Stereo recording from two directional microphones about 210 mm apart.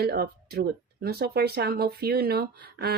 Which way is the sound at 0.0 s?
50° right (ahead or behind).